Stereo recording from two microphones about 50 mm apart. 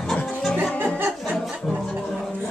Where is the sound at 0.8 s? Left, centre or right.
Right.